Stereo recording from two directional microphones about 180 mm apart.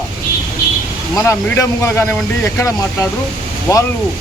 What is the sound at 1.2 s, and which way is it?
Speech, 15° left (ahead or behind).